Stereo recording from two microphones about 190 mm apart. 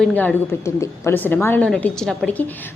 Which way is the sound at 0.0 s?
5° left (ahead or behind).